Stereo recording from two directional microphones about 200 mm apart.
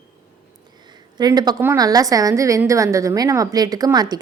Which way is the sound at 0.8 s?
20° right (ahead or behind).